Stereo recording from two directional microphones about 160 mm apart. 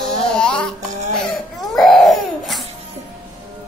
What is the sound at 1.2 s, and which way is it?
Baby cry, centre (ahead or behind).